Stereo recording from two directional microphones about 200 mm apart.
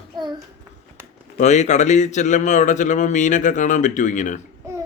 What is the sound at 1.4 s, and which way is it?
Speech, 35° left (ahead or behind).